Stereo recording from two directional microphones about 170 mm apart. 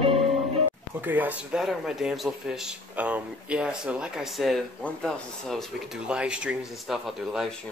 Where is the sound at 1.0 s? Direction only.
10° right (ahead or behind).